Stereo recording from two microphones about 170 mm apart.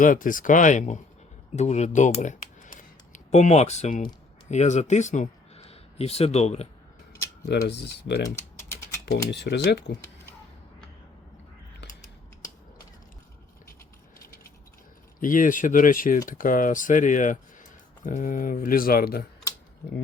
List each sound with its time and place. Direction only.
0.0 s speech: 50° left (ahead or behind)
7.4 s speech: 75° left (ahead or behind)
8.4 s typing: 15° left (ahead or behind)
9.3 s speech: 75° left (ahead or behind)
15.2 s speech: 50° left (ahead or behind)